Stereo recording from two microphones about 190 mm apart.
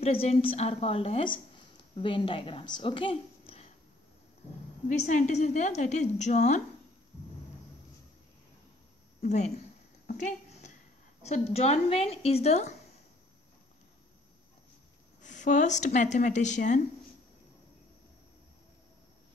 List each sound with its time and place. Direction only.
0.0 s a woman's voice: 30° left (ahead or behind)
4.8 s a woman's voice: 40° left (ahead or behind)
10.1 s a sound: 40° left (ahead or behind)
11.2 s a woman's voice: 35° left (ahead or behind)
15.2 s a sound: 40° left (ahead or behind)
15.8 s a woman's voice: 40° left (ahead or behind)